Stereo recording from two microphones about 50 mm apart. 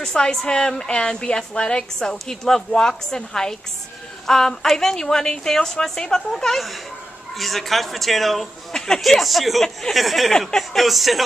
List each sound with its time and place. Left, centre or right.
0.0 s a woman's voice: centre